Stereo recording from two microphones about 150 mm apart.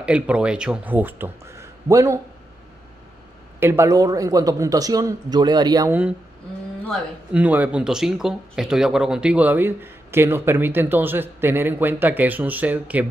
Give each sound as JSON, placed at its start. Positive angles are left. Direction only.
{"t": 0.0, "sound": "speech", "side_deg": -5}
{"t": 3.5, "sound": "a man's voice", "side_deg": -15}
{"t": 5.9, "sound": "speech", "side_deg": -10}
{"t": 7.3, "sound": "speech", "side_deg": -10}